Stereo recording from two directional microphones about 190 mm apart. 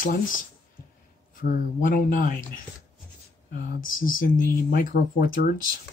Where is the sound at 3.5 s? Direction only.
50° left (ahead or behind).